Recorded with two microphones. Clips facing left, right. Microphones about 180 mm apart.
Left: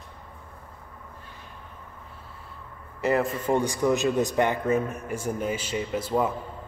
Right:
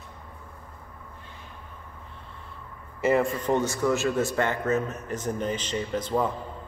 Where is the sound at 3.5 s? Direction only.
15° left (ahead or behind).